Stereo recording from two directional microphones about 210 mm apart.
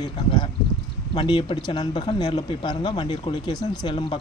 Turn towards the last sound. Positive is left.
turn(degrees=25)  # may be behind; listen again after turning